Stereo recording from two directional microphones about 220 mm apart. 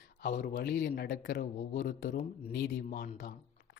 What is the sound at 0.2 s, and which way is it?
Speech, 45° left (ahead or behind).